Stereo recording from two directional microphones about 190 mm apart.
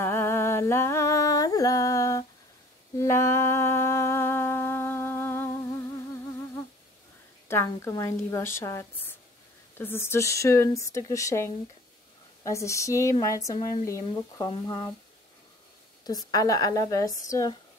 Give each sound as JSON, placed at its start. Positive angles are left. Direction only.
{"t": 0.0, "sound": "humming", "side_deg": 10}
{"t": 7.4, "sound": "a woman's voice", "side_deg": 15}
{"t": 16.3, "sound": "a woman's voice", "side_deg": 20}